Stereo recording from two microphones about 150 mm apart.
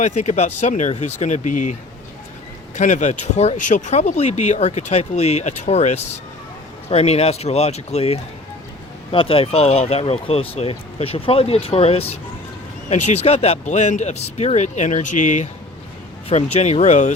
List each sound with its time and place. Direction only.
0.0 s speech: 50° left (ahead or behind)
2.7 s speech: 55° left (ahead or behind)